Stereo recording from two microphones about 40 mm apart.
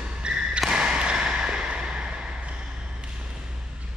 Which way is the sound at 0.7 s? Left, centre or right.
Right.